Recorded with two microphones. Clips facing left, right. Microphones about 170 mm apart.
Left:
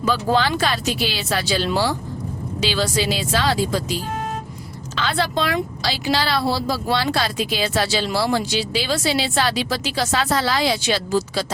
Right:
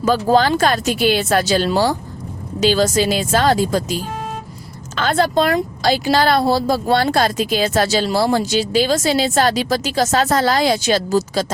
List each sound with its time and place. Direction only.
0.0 s speech: 45° right (ahead or behind)
4.9 s speech: 45° right (ahead or behind)